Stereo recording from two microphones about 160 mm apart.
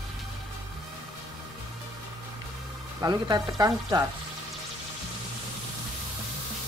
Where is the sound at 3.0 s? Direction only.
25° right (ahead or behind).